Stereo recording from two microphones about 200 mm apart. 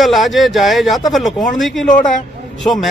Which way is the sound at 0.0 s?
Centre (ahead or behind).